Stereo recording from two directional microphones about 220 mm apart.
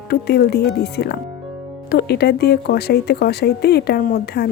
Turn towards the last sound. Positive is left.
turn(degrees=45)  # may be behind; listen again after turning